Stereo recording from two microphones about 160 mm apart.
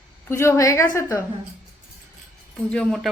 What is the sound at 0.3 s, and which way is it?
Speech, 15° left (ahead or behind).